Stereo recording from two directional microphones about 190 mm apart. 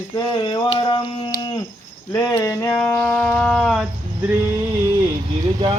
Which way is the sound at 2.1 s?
20° left (ahead or behind).